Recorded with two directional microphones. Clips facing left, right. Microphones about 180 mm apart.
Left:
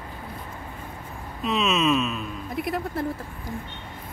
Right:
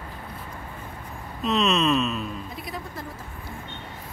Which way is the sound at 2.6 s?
60° left (ahead or behind).